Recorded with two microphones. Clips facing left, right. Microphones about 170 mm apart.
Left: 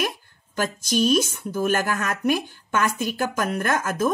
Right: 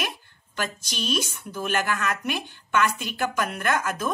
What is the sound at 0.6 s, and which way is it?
A woman's voice, 40° left (ahead or behind).